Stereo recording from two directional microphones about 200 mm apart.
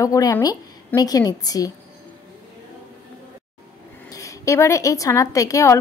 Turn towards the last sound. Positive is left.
turn(degrees=15)  # may be behind; listen again after turning